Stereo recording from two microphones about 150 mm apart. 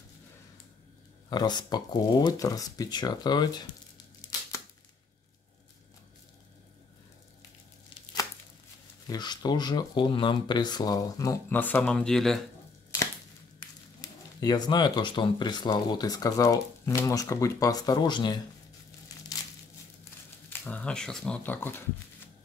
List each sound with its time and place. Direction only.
1.3 s speech: 30° left (ahead or behind)
4.2 s tearing: 30° left (ahead or behind)
9.0 s speech: 25° left (ahead or behind); by 12.4 s centre (ahead or behind)
14.0 s speech: 25° left (ahead or behind)
19.1 s crumpling: 25° left (ahead or behind)
20.4 s speech: 10° left (ahead or behind)